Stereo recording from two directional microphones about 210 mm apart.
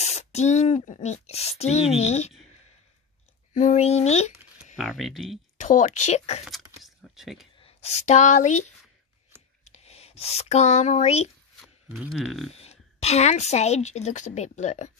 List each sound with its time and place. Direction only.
0.0 s speech: 30° left (ahead or behind)
3.5 s a woman's voice: 35° left (ahead or behind)
4.7 s speech: centre (ahead or behind)
5.6 s a woman's voice: 35° left (ahead or behind)
6.4 s a sound: centre (ahead or behind)
7.6 s speech: 30° left (ahead or behind)
11.6 s speech: 5° right (ahead or behind)
12.5 s a woman's voice: 30° left (ahead or behind)